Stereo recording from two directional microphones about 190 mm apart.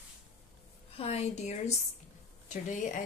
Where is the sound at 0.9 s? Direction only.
35° left (ahead or behind).